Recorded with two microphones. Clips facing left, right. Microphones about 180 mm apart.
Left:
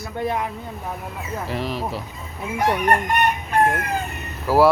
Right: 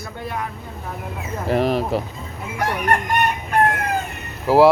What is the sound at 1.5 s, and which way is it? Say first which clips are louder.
Speech: right 9 dB; 50° right (ahead or behind).